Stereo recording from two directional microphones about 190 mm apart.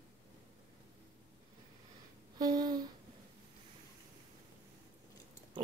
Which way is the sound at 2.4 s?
20° right (ahead or behind).